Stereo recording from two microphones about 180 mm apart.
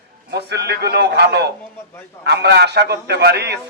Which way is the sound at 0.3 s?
65° right (ahead or behind).